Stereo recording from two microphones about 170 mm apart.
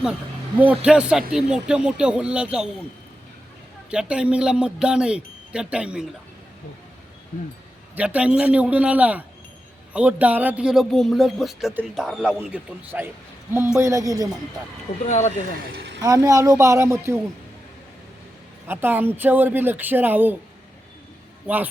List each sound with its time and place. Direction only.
0.9 s speech: 5° right (ahead or behind)
3.9 s speech: 5° right (ahead or behind)
7.9 s a man's voice: 10° right (ahead or behind)
15.0 s speech: 45° left (ahead or behind)
15.5 s speech: 75° right (ahead or behind)
16.0 s a man's voice: 20° right (ahead or behind)
18.7 s speech: 10° right (ahead or behind)
21.4 s a man's voice: 10° right (ahead or behind)